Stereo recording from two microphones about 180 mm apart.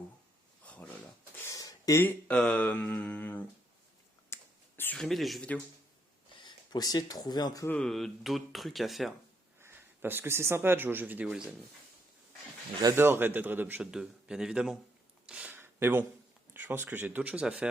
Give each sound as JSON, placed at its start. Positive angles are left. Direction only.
{"t": 0.6, "sound": "a sound", "side_deg": 5}
{"t": 1.4, "sound": "speech", "side_deg": 15}
{"t": 4.3, "sound": "finger snapping", "side_deg": 15}
{"t": 4.8, "sound": "speech", "side_deg": 5}
{"t": 6.4, "sound": "speech", "side_deg": 25}
{"t": 7.8, "sound": "speech", "side_deg": 0}
{"t": 9.6, "sound": "speech", "side_deg": -10}
{"t": 13.0, "sound": "a man's voice", "side_deg": -10}
{"t": 15.3, "sound": "a sound", "side_deg": -5}
{"t": 16.6, "sound": "a man's voice", "side_deg": -10}